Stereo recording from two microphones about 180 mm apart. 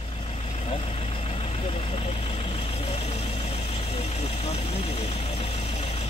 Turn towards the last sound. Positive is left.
turn(degrees=35)  # may be behind; listen again after turning